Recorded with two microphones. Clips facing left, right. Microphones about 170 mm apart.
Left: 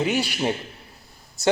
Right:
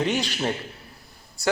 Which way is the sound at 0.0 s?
10° left (ahead or behind).